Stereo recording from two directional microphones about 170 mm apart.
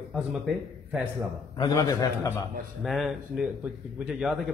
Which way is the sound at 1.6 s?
20° left (ahead or behind).